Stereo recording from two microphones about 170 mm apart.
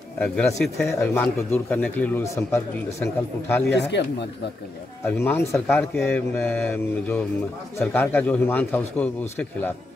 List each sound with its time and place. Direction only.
0.8 s speech: 10° left (ahead or behind)
3.7 s speech: 90° left
5.0 s speech: 10° left (ahead or behind)